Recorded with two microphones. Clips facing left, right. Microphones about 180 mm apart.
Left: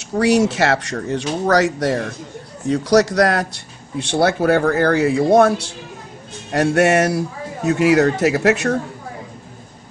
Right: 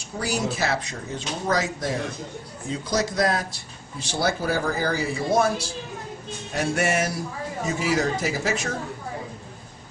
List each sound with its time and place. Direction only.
0.2 s speech: 80° left